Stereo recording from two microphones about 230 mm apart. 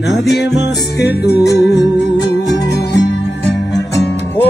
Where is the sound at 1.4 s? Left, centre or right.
Left.